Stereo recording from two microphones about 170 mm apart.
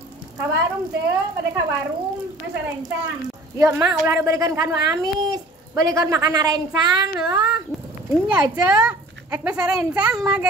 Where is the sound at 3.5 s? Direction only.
20° right (ahead or behind).